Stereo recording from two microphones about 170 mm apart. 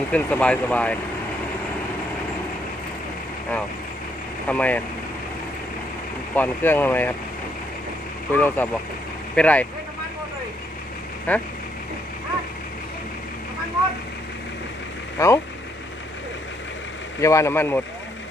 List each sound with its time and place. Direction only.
0.1 s speech: 10° left (ahead or behind)
4.4 s speech: 10° left (ahead or behind)
6.3 s speech: 10° left (ahead or behind)
8.3 s speech: 10° left (ahead or behind)
11.3 s speech: 10° left (ahead or behind)
15.2 s speech: 15° left (ahead or behind)
17.2 s speech: 15° left (ahead or behind)